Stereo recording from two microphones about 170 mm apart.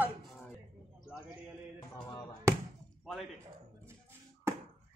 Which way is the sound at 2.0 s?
25° left (ahead or behind).